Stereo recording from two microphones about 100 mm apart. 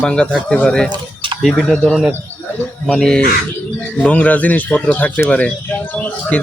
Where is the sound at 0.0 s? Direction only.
10° left (ahead or behind).